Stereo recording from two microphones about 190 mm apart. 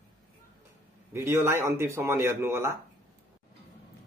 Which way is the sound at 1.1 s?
15° right (ahead or behind).